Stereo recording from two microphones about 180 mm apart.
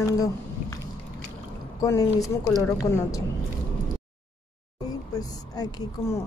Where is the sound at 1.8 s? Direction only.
20° left (ahead or behind).